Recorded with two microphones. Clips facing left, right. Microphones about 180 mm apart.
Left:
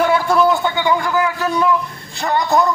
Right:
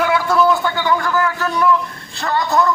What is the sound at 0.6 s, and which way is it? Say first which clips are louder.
A man's voice: left 1 dB; 20° left (ahead or behind).